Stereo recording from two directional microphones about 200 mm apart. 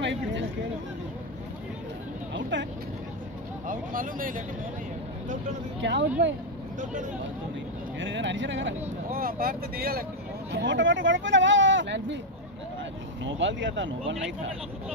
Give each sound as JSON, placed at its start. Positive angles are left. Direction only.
{"t": 0.0, "sound": "a sound", "side_deg": -65}
{"t": 2.5, "sound": "vehicle", "side_deg": -65}
{"t": 3.6, "sound": "vehicle", "side_deg": -45}
{"t": 5.8, "sound": "speech", "side_deg": -60}
{"t": 6.8, "sound": "speech", "side_deg": -40}
{"t": 8.0, "sound": "speech", "side_deg": -65}
{"t": 9.1, "sound": "speech", "side_deg": -45}
{"t": 10.5, "sound": "speech", "side_deg": -65}
{"t": 13.2, "sound": "speech", "side_deg": -65}